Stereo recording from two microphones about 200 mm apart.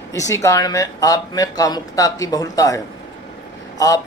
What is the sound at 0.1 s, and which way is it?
Speech, 15° left (ahead or behind).